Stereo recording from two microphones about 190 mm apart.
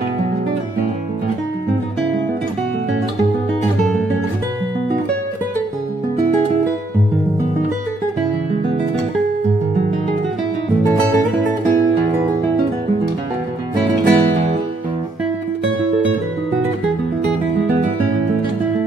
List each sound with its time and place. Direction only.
13.9 s music: 30° right (ahead or behind)